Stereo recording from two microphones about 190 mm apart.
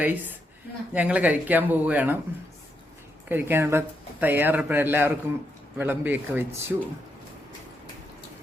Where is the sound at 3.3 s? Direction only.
10° right (ahead or behind).